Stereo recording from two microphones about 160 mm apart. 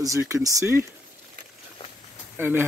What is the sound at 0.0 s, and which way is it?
Speech, 20° right (ahead or behind).